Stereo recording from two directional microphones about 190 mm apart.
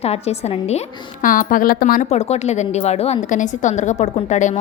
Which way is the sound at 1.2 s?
45° left (ahead or behind).